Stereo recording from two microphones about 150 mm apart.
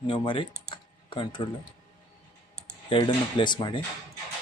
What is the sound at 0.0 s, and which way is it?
Speech, 35° left (ahead or behind).